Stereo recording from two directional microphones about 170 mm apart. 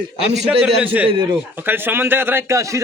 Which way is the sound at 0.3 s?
Centre (ahead or behind).